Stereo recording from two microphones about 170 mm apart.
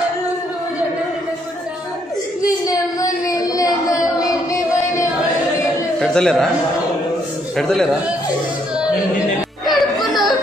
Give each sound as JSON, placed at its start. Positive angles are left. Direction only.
{"t": 2.6, "sound": "a sound", "side_deg": 20}
{"t": 5.9, "sound": "a man's voice", "side_deg": 5}
{"t": 7.5, "sound": "a man's voice", "side_deg": 5}
{"t": 9.7, "sound": "music", "side_deg": 0}